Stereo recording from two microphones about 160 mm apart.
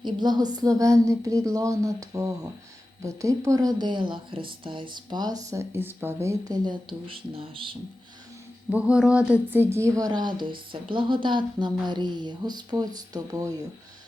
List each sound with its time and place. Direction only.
0.0 s speech: 25° right (ahead or behind)
8.7 s speech: 5° right (ahead or behind); by 13.7 s 20° right (ahead or behind)